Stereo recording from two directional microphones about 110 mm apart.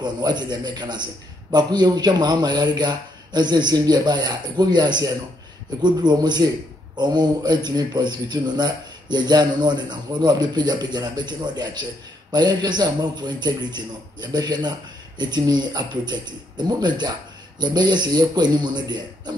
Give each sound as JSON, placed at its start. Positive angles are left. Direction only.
{"t": 0.0, "sound": "a man's voice", "side_deg": -40}